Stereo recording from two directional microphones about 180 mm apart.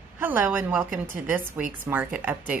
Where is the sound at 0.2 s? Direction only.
10° right (ahead or behind).